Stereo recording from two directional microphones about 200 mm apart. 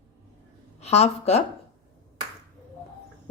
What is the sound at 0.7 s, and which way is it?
Speech, 30° left (ahead or behind).